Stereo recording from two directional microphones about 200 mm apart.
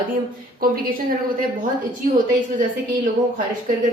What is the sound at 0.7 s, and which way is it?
Speech, 45° right (ahead or behind).